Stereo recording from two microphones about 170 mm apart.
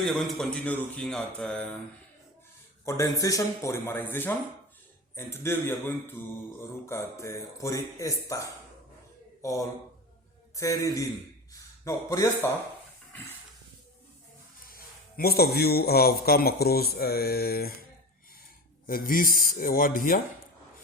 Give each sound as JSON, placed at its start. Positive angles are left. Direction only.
{"t": 0.0, "sound": "speech", "side_deg": 0}
{"t": 2.8, "sound": "a man's voice", "side_deg": 20}
{"t": 14.7, "sound": "a man's voice", "side_deg": 60}
{"t": 18.9, "sound": "a man's voice", "side_deg": 55}